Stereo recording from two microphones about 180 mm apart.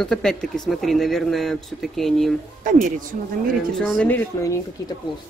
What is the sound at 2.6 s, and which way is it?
Speech, 45° right (ahead or behind).